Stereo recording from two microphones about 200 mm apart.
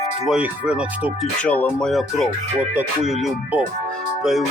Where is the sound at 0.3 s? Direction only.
5° right (ahead or behind).